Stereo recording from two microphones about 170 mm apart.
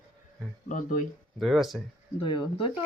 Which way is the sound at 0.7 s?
50° left (ahead or behind).